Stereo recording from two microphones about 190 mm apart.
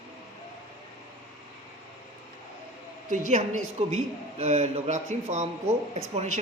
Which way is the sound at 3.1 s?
40° right (ahead or behind).